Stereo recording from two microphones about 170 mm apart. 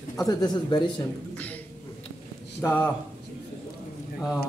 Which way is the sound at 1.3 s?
10° left (ahead or behind).